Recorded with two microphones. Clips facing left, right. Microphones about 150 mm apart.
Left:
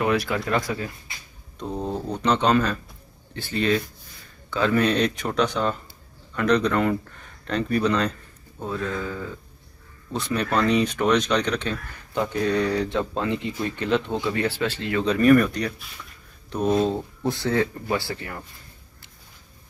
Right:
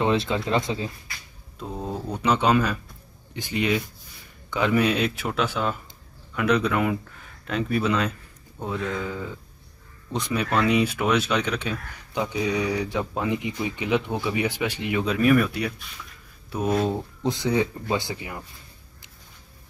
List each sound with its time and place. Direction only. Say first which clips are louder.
0.0 s speech: even; 25° right (ahead or behind)
1.6 s speech: left 3 dB; 5° right (ahead or behind)
8.5 s speech: even; 15° right (ahead or behind)
15.0 s speech: left 4 dB; 5° right (ahead or behind)